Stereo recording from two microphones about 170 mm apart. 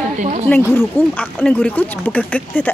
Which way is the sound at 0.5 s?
15° left (ahead or behind).